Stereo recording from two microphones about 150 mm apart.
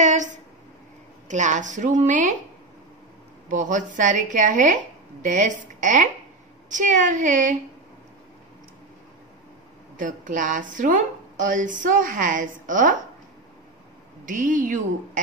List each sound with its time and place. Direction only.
0.0 s a sound: 55° right (ahead or behind)
1.3 s a woman's voice: 55° right (ahead or behind)
3.4 s a woman's voice: 55° right (ahead or behind)
9.9 s a woman's voice: 60° right (ahead or behind)
14.2 s a woman's voice: 60° right (ahead or behind)